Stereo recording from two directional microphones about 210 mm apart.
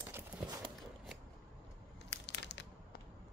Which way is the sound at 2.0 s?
55° left (ahead or behind).